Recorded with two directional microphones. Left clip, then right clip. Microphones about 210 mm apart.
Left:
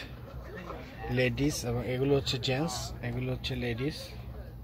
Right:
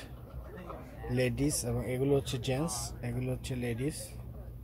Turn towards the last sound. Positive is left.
turn(degrees=-5)  # may be behind; listen again after turning